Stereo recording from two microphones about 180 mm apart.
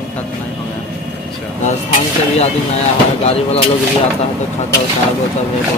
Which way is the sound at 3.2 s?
35° left (ahead or behind).